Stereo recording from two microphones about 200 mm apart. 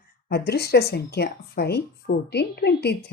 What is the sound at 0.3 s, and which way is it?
Speech, 55° left (ahead or behind).